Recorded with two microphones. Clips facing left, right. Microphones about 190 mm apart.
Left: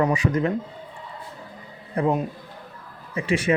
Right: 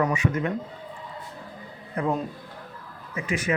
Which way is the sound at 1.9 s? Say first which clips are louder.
Left 4 dB; 25° left (ahead or behind).